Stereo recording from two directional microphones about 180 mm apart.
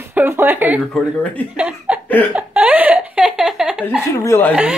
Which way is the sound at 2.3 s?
10° right (ahead or behind).